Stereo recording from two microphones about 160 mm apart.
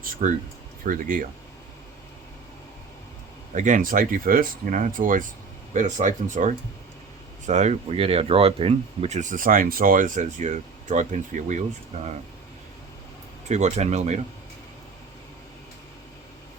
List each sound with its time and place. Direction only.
0.0 s speech: 50° right (ahead or behind)
3.5 s speech: 50° right (ahead or behind)
13.5 s speech: 45° right (ahead or behind)